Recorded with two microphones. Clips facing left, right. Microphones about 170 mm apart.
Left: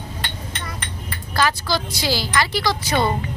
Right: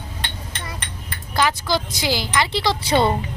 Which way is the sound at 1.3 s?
20° right (ahead or behind).